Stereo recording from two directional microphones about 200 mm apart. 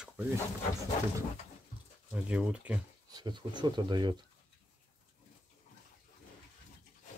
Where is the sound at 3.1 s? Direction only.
20° right (ahead or behind).